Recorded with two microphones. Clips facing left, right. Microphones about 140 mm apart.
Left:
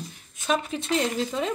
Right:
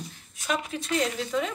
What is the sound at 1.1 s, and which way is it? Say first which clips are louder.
Speech: left 1 dB; 35° left (ahead or behind).